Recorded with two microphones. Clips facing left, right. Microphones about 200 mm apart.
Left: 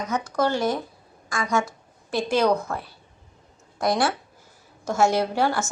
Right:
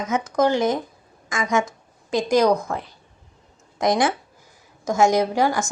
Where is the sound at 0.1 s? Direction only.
20° right (ahead or behind).